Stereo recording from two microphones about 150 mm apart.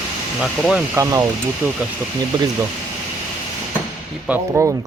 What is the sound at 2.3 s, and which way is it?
Speech, 30° right (ahead or behind).